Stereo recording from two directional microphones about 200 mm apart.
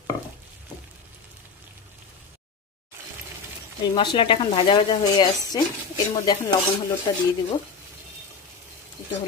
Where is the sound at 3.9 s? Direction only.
25° left (ahead or behind).